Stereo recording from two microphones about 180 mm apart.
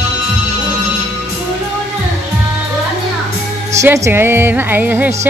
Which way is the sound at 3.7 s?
15° right (ahead or behind).